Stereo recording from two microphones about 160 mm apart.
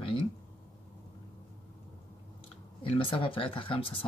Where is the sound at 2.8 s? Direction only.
35° left (ahead or behind).